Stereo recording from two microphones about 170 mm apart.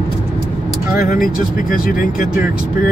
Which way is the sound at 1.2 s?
55° left (ahead or behind).